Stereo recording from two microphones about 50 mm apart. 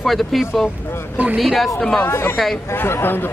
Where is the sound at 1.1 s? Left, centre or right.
Right.